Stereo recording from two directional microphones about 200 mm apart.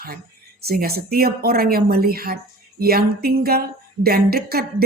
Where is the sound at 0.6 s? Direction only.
50° right (ahead or behind).